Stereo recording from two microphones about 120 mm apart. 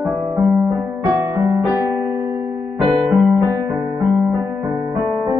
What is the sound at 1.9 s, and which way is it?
Music, 35° right (ahead or behind).